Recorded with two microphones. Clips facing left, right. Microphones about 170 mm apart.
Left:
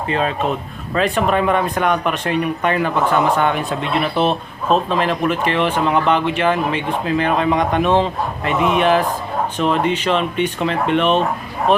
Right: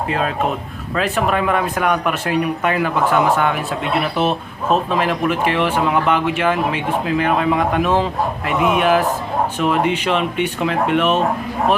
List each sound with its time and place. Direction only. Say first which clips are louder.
0.1 s speech: left 2 dB; centre (ahead or behind)